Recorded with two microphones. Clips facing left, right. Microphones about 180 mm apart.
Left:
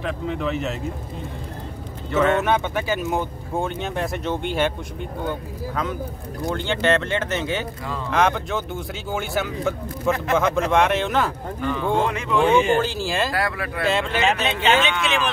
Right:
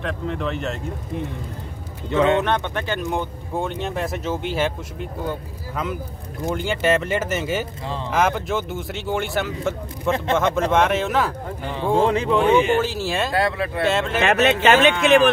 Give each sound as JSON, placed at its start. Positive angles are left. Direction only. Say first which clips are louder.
{"t": 0.0, "sound": "speech", "louder": "even", "side_deg": 0}
{"t": 2.0, "sound": "speech", "louder": "right 1 dB", "side_deg": -20}
{"t": 2.4, "sound": "speech", "louder": "left 1 dB", "side_deg": 5}
{"t": 6.5, "sound": "speech", "louder": "right 1 dB", "side_deg": -10}
{"t": 11.6, "sound": "speech", "louder": "right 2 dB", "side_deg": -30}
{"t": 12.7, "sound": "speech", "louder": "even", "side_deg": 0}
{"t": 13.3, "sound": "speech", "louder": "right 4 dB", "side_deg": -25}
{"t": 13.8, "sound": "speech", "louder": "even", "side_deg": 0}
{"t": 14.2, "sound": "speech", "louder": "right 7 dB", "side_deg": -60}